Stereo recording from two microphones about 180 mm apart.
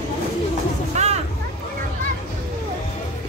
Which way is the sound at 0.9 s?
35° right (ahead or behind).